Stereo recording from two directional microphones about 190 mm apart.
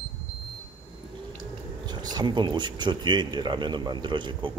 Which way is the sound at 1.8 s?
20° right (ahead or behind).